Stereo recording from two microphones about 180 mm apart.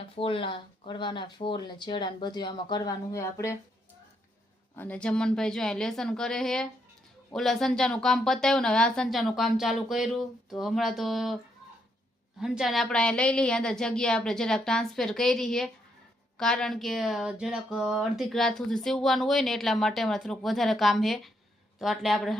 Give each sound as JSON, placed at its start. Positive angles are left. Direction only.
{"t": 0.2, "sound": "speech", "side_deg": 30}
{"t": 4.8, "sound": "speech", "side_deg": 5}
{"t": 12.4, "sound": "speech", "side_deg": 0}